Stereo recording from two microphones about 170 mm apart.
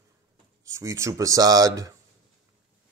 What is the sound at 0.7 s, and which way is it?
Speech, 20° right (ahead or behind).